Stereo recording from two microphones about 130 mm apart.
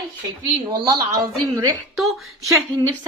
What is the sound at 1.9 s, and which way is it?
Speech, centre (ahead or behind).